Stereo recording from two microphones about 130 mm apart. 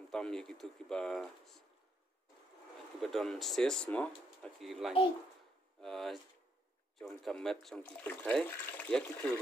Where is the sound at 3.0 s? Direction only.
Centre (ahead or behind).